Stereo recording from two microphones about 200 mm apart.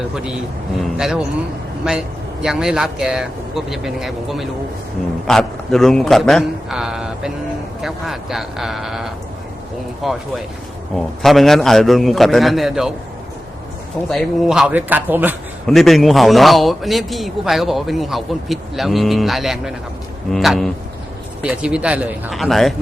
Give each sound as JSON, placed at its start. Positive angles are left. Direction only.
{"t": 0.8, "sound": "a man's voice", "side_deg": 0}
{"t": 14.1, "sound": "speech", "side_deg": 0}
{"t": 15.6, "sound": "a man's voice", "side_deg": 0}